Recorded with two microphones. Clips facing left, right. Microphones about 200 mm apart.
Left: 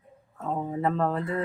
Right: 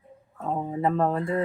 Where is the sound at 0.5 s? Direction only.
15° right (ahead or behind).